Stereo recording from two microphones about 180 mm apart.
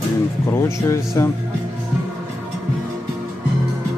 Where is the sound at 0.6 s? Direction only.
15° left (ahead or behind).